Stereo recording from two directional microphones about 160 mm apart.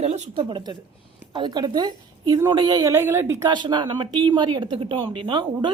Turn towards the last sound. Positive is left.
turn(degrees=-30)  # may be behind; listen again after turning